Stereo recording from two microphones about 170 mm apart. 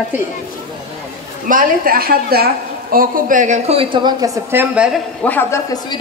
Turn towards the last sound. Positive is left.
turn(degrees=10)  # may be behind; listen again after turning